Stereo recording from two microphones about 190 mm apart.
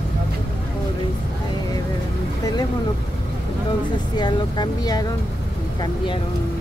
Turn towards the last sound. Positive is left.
turn(degrees=20)  # may be behind; listen again after turning